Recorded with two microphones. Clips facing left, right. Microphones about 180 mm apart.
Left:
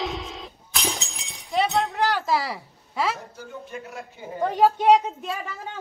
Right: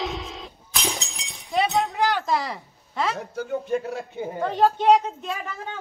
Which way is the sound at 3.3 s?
60° right (ahead or behind).